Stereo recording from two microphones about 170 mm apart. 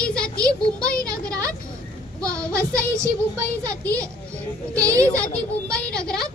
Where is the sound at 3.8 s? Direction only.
10° left (ahead or behind).